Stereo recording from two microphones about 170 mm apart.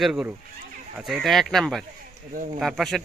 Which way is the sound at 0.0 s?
5° right (ahead or behind).